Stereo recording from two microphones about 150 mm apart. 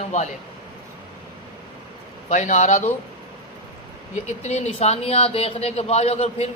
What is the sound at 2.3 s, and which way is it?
Speech, 55° left (ahead or behind).